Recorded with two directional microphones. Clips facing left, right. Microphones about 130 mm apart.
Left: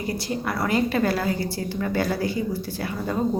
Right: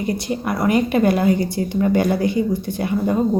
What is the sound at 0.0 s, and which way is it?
A woman's voice, 20° right (ahead or behind).